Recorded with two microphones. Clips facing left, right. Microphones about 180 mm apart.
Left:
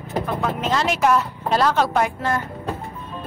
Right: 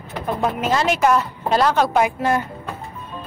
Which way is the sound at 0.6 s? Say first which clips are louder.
Right 2 dB; 5° right (ahead or behind).